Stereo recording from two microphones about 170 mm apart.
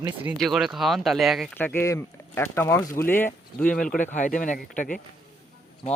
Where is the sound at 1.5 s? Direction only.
10° left (ahead or behind).